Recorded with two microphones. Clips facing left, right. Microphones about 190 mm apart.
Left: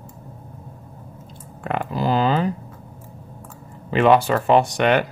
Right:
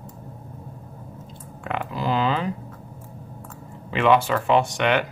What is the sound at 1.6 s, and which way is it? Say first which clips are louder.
Speech: left 4 dB; 45° left (ahead or behind).